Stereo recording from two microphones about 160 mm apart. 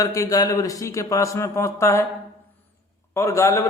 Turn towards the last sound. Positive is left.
turn(degrees=20)  # may be behind; listen again after turning